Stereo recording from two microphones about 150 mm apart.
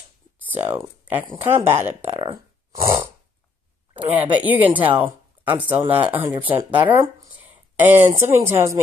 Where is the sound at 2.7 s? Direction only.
20° right (ahead or behind).